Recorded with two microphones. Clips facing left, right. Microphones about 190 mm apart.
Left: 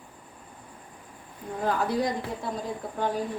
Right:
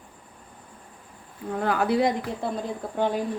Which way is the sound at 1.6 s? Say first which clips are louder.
Right 4 dB; 70° right (ahead or behind).